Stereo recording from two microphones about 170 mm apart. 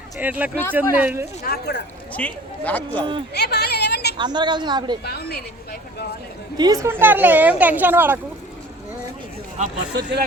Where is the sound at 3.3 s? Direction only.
75° left (ahead or behind).